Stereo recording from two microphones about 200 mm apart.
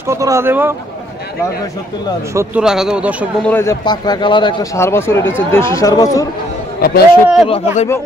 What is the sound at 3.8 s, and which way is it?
Speech, 20° left (ahead or behind).